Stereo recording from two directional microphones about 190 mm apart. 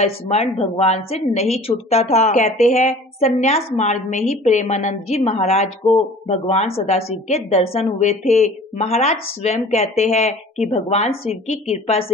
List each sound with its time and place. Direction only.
0.0 s a woman's voice: 35° left (ahead or behind)